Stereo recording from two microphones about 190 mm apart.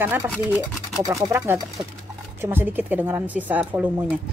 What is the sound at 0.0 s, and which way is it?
Speech, 10° right (ahead or behind).